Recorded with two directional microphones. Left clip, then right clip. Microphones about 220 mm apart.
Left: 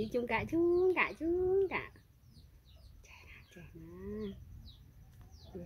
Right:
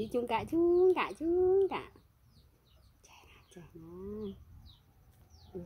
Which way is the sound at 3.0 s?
20° right (ahead or behind).